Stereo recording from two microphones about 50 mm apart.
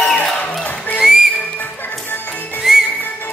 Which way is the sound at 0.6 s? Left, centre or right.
Left.